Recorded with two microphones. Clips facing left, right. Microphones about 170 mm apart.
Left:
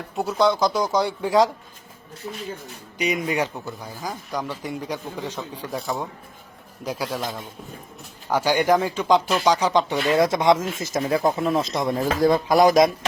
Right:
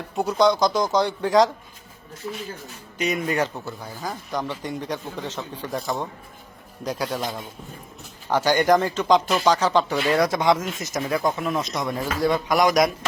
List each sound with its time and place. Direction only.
0.2 s speech: 5° left (ahead or behind)
3.0 s speech: 10° left (ahead or behind)
8.3 s speech: 10° left (ahead or behind); by 12.9 s 30° left (ahead or behind)